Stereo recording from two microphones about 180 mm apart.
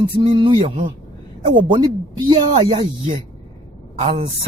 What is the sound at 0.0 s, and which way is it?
Speech, 25° right (ahead or behind).